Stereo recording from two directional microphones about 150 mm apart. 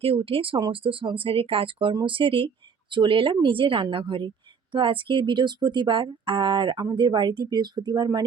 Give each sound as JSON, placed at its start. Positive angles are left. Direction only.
{"t": 0.0, "sound": "speech", "side_deg": -40}